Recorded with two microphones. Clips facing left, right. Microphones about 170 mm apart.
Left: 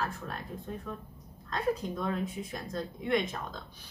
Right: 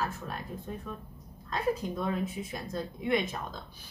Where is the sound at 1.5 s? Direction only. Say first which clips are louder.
Right 1 dB; 5° right (ahead or behind).